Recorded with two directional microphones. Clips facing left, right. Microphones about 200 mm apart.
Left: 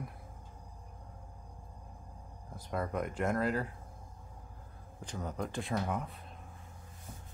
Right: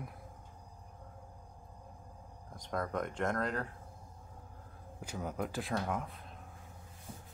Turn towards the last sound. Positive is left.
turn(degrees=0)  # may be behind; listen again after turning